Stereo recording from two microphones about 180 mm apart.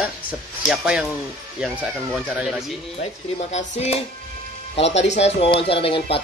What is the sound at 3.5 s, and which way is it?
Speech, 40° left (ahead or behind).